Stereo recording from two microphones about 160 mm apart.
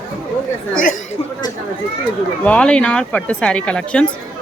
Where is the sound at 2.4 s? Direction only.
5° left (ahead or behind).